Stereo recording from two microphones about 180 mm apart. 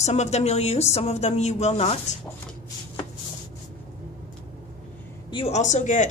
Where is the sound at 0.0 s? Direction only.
40° left (ahead or behind).